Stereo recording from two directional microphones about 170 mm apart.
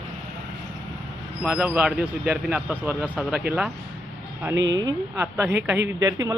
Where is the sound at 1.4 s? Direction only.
5° right (ahead or behind).